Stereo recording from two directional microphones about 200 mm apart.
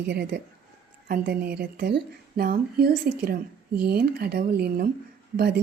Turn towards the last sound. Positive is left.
turn(degrees=-50)  # may be behind; listen again after turning